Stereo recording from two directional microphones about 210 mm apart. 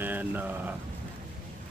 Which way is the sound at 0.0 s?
10° right (ahead or behind).